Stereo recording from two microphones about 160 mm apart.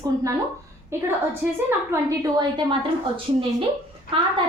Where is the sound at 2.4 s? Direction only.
30° right (ahead or behind).